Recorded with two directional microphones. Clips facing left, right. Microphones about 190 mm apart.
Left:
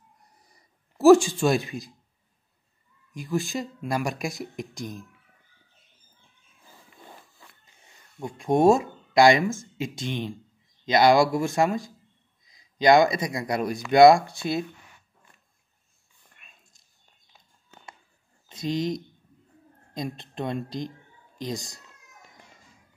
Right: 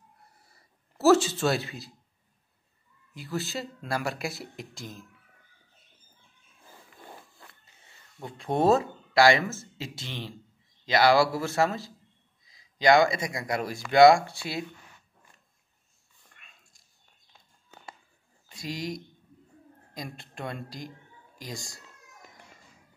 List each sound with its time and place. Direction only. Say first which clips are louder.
0.4 s a sound: left 1 dB; 15° left (ahead or behind)
3.1 s speech: left 5 dB; 15° left (ahead or behind)
7.6 s a woman's voice: left 2 dB; 15° left (ahead or behind)
18.5 s a woman's voice: left 7 dB; 20° left (ahead or behind)